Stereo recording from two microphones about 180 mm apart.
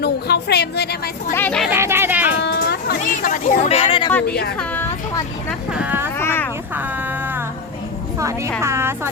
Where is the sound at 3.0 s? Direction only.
45° left (ahead or behind).